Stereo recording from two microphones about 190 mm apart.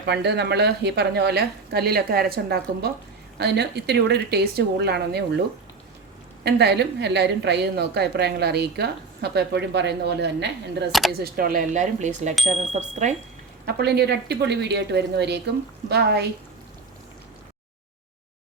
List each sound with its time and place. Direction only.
0.0 s a woman's voice: 60° right (ahead or behind)
6.4 s a woman's voice: 60° right (ahead or behind)
11.2 s speech: 50° right (ahead or behind)
13.7 s a woman's voice: 60° right (ahead or behind)